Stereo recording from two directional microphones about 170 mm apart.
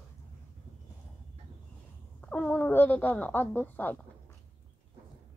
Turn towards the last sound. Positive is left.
turn(degrees=10)  # may be behind; listen again after turning